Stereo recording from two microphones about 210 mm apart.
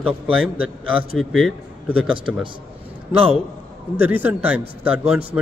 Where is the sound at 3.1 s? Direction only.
30° right (ahead or behind).